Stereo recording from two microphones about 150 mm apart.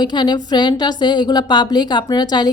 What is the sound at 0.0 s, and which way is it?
A woman's voice, 30° left (ahead or behind).